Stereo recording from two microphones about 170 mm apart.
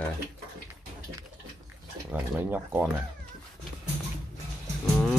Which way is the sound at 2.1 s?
10° right (ahead or behind).